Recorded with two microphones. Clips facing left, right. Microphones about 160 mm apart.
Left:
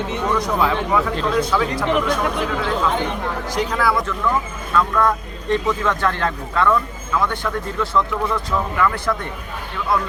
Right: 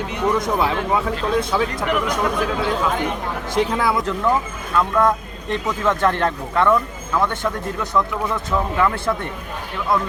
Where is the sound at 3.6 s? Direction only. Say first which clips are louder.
Right 1 dB; 25° right (ahead or behind).